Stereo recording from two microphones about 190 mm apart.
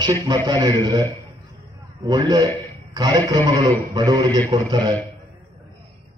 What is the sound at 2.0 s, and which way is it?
A man's voice, 20° right (ahead or behind).